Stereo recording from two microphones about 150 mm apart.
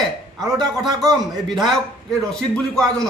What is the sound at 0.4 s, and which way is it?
Speech, 25° right (ahead or behind).